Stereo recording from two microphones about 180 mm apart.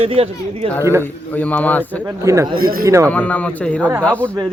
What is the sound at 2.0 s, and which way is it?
Speech, 15° right (ahead or behind).